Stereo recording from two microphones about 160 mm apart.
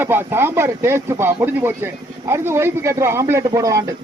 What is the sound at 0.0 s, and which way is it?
A man's voice, 15° right (ahead or behind).